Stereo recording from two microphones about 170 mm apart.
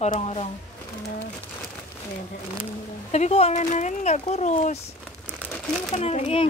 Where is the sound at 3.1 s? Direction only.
40° left (ahead or behind).